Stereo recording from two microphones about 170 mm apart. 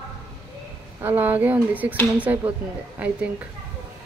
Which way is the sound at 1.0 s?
10° right (ahead or behind).